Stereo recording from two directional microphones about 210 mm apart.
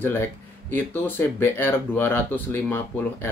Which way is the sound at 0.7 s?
10° left (ahead or behind).